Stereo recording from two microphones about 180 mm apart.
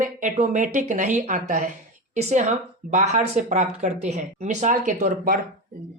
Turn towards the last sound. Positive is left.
turn(degrees=-45)  # may be behind; listen again after turning